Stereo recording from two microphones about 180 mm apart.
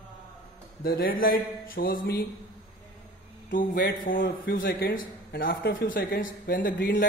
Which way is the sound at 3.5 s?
55° left (ahead or behind).